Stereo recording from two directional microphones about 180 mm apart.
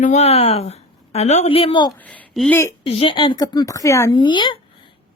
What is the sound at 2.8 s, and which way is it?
A woman's voice, 30° left (ahead or behind).